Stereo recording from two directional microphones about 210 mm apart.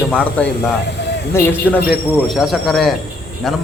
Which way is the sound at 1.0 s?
55° left (ahead or behind).